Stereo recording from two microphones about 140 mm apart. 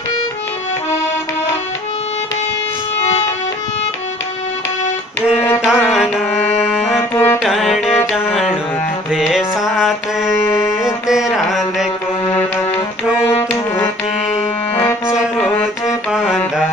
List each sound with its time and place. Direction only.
3.0 s music: 50° left (ahead or behind)
5.6 s music: centre (ahead or behind)
7.0 s music: 15° left (ahead or behind)
7.4 s music: centre (ahead or behind)
13.3 s music: 15° left (ahead or behind)
16.1 s music: 5° right (ahead or behind)